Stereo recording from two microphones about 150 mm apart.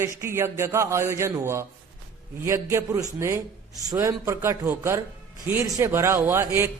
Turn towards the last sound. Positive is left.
turn(degrees=-15)  # may be behind; listen again after turning